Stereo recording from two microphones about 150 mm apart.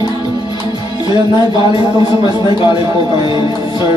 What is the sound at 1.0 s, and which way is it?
Speech, 35° left (ahead or behind).